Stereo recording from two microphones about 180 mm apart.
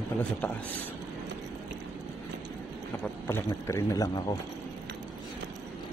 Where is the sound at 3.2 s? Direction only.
15° left (ahead or behind).